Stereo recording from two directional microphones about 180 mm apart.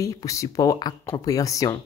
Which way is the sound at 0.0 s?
20° left (ahead or behind).